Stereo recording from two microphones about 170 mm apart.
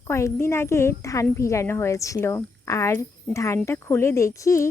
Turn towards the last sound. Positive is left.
turn(degrees=15)  # may be behind; listen again after turning